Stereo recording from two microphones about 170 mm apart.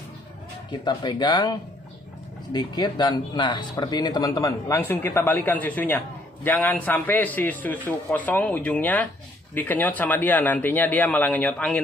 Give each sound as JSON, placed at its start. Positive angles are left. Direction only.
{"t": 0.7, "sound": "speech", "side_deg": 25}
{"t": 2.5, "sound": "speech", "side_deg": 25}